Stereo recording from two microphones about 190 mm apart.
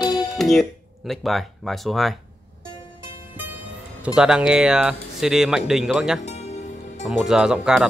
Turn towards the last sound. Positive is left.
turn(degrees=-5)  # may be behind; listen again after turning